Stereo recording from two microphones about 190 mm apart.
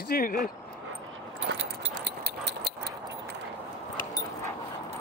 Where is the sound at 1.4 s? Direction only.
65° right (ahead or behind).